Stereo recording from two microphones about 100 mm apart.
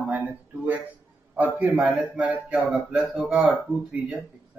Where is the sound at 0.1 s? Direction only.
15° right (ahead or behind).